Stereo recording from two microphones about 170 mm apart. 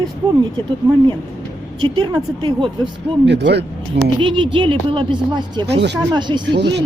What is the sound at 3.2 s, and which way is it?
Speech, 85° right.